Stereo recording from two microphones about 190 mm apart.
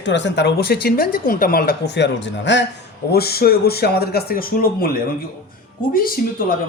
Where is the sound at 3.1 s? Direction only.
55° left (ahead or behind).